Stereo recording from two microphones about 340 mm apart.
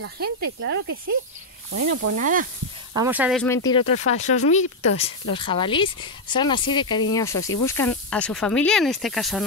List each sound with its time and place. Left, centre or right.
0.0 s speech: right
2.1 s sizzle: right
3.0 s speech: centre